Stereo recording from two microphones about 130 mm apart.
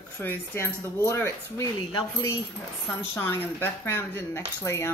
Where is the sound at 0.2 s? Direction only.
15° left (ahead or behind).